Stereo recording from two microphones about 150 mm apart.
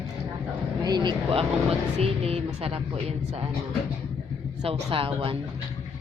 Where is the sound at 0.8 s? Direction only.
30° right (ahead or behind).